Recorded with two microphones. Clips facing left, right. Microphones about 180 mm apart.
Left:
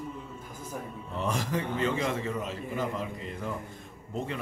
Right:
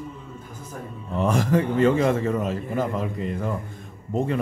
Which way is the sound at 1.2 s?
55° right (ahead or behind).